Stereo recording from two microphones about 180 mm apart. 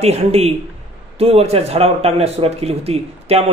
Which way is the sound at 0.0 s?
35° right (ahead or behind).